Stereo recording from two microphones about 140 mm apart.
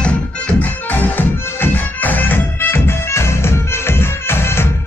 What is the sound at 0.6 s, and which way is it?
Music, 10° left (ahead or behind).